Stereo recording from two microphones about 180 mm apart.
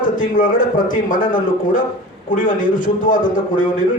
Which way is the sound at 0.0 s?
50° left (ahead or behind).